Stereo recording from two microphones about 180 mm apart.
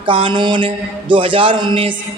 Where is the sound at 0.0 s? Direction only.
30° right (ahead or behind).